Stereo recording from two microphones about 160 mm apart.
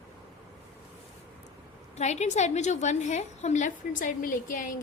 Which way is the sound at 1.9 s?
45° left (ahead or behind).